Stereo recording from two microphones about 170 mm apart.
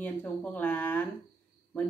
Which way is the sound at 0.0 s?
10° left (ahead or behind).